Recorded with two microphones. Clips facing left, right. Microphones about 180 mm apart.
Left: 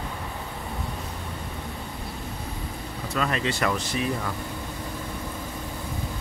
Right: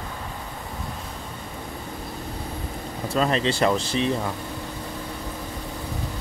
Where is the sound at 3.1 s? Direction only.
30° right (ahead or behind).